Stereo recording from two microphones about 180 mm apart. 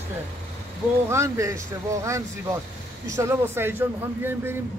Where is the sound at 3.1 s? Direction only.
15° right (ahead or behind).